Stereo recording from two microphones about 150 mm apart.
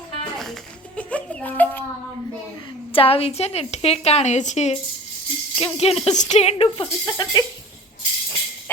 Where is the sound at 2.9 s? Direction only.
40° left (ahead or behind).